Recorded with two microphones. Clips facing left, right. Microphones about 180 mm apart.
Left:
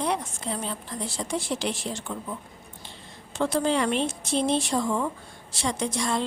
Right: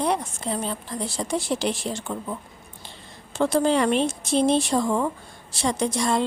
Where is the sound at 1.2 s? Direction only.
35° right (ahead or behind).